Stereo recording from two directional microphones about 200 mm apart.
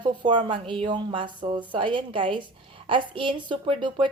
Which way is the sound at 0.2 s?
25° right (ahead or behind).